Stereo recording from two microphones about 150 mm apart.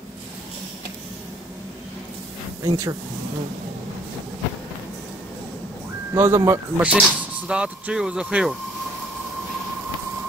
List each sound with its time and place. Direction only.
2.6 s speech: 25° right (ahead or behind)
6.1 s speech: 15° right (ahead or behind)
6.9 s speech: 5° right (ahead or behind)